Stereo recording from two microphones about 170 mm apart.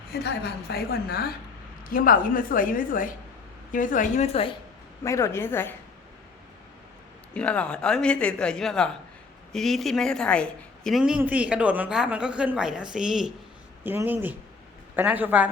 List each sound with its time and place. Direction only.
0.1 s a woman's voice: 75° left (ahead or behind); by 4.3 s 50° left (ahead or behind)
4.3 s a woman's voice: 35° left (ahead or behind)
5.0 s a woman's voice: 15° left (ahead or behind)
7.3 s a woman's voice: 5° left (ahead or behind); by 15.4 s 10° right (ahead or behind)